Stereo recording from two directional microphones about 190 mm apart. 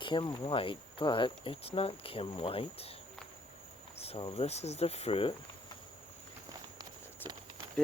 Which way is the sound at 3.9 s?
30° left (ahead or behind).